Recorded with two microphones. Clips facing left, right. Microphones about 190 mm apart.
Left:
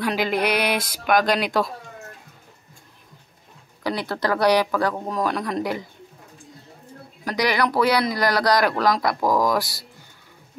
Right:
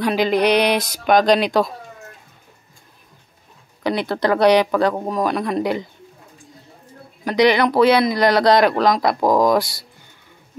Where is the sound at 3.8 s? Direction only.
20° right (ahead or behind).